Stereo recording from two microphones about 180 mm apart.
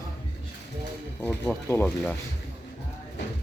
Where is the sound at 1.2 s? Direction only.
10° left (ahead or behind).